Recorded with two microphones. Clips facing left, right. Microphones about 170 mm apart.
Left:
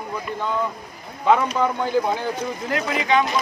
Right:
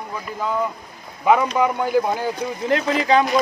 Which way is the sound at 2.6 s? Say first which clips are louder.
Right 5 dB; 30° right (ahead or behind).